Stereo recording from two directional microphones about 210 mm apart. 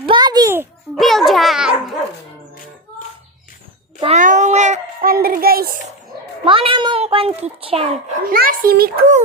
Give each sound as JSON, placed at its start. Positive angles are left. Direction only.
{"t": 0.0, "sound": "babbling", "side_deg": -20}
{"t": 0.9, "sound": "babbling", "side_deg": 0}
{"t": 4.0, "sound": "child singing", "side_deg": -35}
{"t": 6.4, "sound": "a sound", "side_deg": -25}
{"t": 8.3, "sound": "a child's voice", "side_deg": -45}